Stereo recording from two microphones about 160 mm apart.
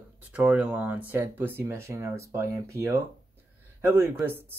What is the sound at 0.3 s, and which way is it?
Speech, 10° right (ahead or behind).